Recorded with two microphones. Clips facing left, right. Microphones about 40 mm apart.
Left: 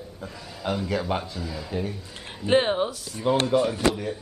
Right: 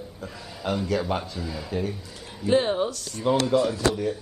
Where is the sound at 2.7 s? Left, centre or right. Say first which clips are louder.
Even; centre.